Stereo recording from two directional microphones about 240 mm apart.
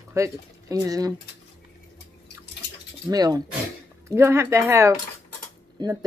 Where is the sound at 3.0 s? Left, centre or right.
Centre.